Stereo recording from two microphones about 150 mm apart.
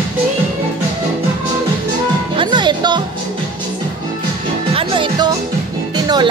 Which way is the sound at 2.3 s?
30° right (ahead or behind).